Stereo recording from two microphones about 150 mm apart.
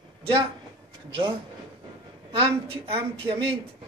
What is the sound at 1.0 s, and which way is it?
A woman's voice, 35° right (ahead or behind).